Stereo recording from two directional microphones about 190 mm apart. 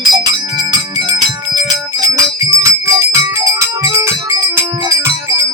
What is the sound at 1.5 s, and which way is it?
Music, 20° right (ahead or behind).